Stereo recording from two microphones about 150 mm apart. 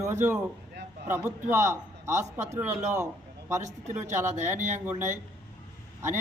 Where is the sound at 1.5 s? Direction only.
20° right (ahead or behind).